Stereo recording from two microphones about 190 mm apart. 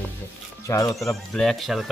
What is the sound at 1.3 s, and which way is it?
Speech, centre (ahead or behind).